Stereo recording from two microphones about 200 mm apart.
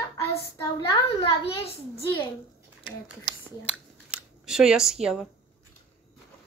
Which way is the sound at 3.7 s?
5° right (ahead or behind).